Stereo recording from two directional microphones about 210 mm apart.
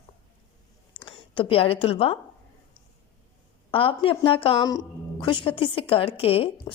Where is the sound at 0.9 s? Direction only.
25° left (ahead or behind).